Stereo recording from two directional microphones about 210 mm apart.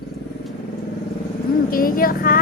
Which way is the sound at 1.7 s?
45° left (ahead or behind).